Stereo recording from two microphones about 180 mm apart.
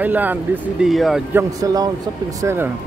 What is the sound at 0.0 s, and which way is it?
Speech, 10° right (ahead or behind).